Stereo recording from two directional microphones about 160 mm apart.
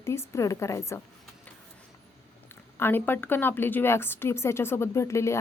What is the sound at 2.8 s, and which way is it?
A woman's voice, 15° left (ahead or behind).